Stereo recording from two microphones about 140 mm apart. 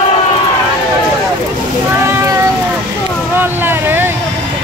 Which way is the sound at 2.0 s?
20° right (ahead or behind).